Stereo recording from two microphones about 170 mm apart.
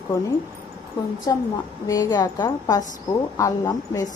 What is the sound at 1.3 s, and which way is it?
Speech, 20° left (ahead or behind).